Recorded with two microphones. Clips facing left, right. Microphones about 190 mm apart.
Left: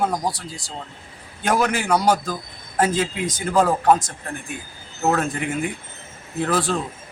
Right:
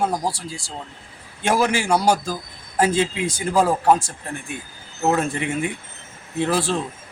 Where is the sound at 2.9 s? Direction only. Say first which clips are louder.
Right 2 dB; 30° right (ahead or behind).